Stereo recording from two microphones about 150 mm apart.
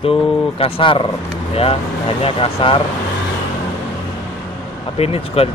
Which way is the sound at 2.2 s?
40° left (ahead or behind).